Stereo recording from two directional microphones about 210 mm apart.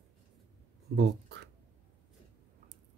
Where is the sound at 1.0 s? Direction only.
55° right (ahead or behind).